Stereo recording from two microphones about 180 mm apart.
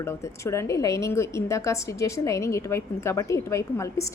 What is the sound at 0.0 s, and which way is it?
A woman's voice, 15° left (ahead or behind).